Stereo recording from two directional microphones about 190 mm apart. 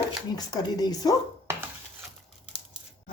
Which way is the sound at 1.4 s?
10° right (ahead or behind).